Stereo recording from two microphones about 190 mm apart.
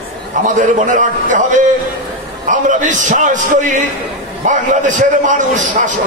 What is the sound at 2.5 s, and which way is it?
A man's voice, 40° right (ahead or behind).